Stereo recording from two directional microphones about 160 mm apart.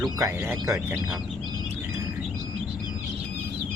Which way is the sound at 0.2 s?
15° right (ahead or behind).